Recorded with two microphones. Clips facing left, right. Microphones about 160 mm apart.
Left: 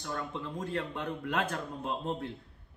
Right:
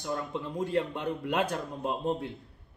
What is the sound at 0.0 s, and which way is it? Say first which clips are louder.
A man's voice: right 4 dB; 20° right (ahead or behind).